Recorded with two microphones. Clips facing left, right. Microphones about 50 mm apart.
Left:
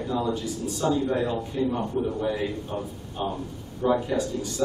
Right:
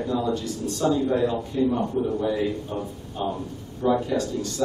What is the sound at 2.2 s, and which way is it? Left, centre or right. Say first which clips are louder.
A man's voice: right 3 dB; centre.